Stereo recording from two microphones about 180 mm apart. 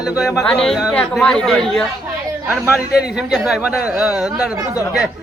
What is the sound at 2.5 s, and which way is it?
A man's voice, 10° right (ahead or behind).